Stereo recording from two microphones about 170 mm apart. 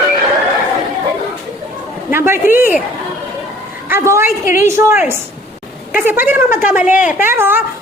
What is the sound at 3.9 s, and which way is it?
Speech, 15° right (ahead or behind).